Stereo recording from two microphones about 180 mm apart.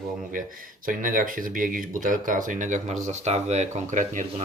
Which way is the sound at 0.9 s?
50° right (ahead or behind).